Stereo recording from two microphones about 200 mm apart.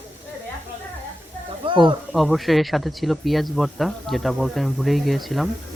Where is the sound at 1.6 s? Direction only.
25° right (ahead or behind).